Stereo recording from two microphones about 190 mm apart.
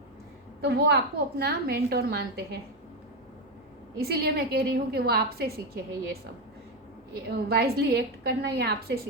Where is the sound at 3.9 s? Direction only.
55° right (ahead or behind).